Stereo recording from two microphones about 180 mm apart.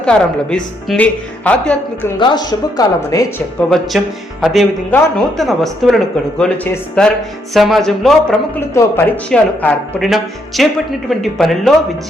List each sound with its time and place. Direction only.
0.0 s speech: 5° left (ahead or behind)
2.1 s speech: 25° left (ahead or behind)
3.7 s speech: centre (ahead or behind)